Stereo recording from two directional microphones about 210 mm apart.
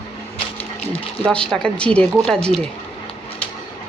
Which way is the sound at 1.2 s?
5° left (ahead or behind).